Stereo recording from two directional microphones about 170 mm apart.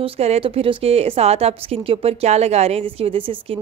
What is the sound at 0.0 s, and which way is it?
A woman's voice, 35° right (ahead or behind).